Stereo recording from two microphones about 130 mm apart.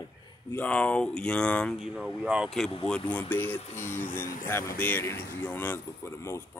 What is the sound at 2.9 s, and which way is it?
Speech, 10° left (ahead or behind).